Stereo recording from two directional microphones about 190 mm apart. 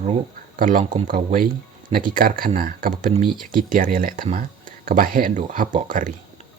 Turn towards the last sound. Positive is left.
turn(degrees=-45)  # may be behind; listen again after turning